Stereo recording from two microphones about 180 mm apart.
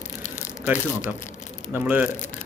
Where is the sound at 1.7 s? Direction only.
10° right (ahead or behind).